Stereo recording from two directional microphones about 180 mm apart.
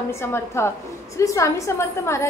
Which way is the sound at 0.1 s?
15° left (ahead or behind).